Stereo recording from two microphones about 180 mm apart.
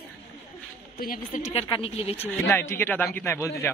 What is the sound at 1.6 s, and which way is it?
Speech, 30° left (ahead or behind).